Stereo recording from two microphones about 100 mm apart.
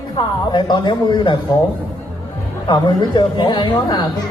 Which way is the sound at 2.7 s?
50° left (ahead or behind).